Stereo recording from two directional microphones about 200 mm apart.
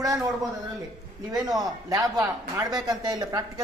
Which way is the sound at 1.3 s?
20° right (ahead or behind).